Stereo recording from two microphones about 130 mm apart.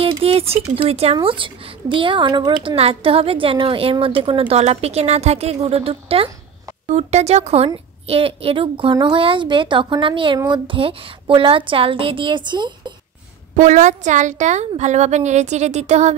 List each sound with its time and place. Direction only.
0.2 s speech: 50° right (ahead or behind)
2.6 s a woman's voice: 45° right (ahead or behind)
6.9 s a woman's voice: 60° right (ahead or behind); by 12.9 s 35° right (ahead or behind)
13.6 s a woman's voice: 65° right (ahead or behind)